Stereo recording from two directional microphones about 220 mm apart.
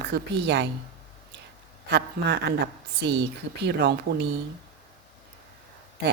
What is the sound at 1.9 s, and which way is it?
Speech, 50° right (ahead or behind).